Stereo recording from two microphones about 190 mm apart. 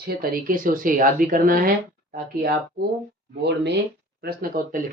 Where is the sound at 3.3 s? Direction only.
65° right (ahead or behind).